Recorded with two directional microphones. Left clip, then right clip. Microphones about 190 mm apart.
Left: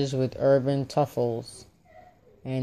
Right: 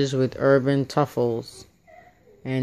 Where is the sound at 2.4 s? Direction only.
15° right (ahead or behind).